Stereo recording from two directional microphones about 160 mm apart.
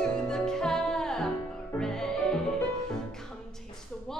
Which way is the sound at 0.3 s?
5° left (ahead or behind).